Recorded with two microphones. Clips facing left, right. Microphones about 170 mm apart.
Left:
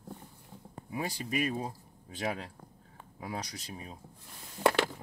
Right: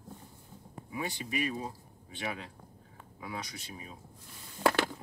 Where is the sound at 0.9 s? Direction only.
40° left (ahead or behind).